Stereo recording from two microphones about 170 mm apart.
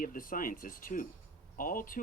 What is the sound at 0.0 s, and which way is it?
Speech, 55° left (ahead or behind).